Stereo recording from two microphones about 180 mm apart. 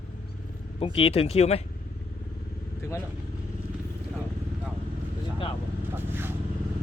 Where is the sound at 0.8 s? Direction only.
30° left (ahead or behind).